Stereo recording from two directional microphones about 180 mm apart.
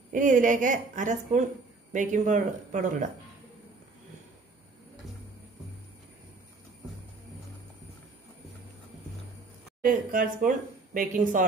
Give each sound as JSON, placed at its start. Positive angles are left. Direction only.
{"t": 0.1, "sound": "speech", "side_deg": -45}
{"t": 9.8, "sound": "speech", "side_deg": -50}